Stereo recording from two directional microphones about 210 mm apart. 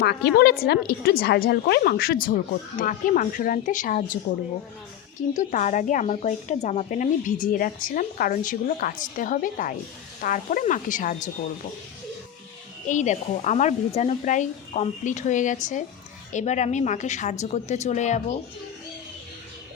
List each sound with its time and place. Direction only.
0.0 s a woman's voice: 50° left (ahead or behind)
5.3 s speech: 35° left (ahead or behind)
12.9 s speech: 35° left (ahead or behind)